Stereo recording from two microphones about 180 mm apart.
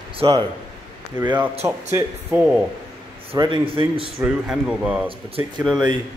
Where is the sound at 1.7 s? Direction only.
15° right (ahead or behind).